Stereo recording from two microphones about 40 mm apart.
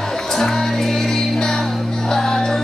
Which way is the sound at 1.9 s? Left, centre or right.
Centre.